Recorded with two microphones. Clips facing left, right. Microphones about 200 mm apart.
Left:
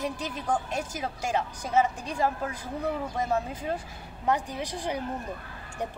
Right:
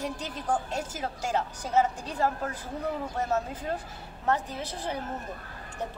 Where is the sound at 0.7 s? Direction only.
10° left (ahead or behind).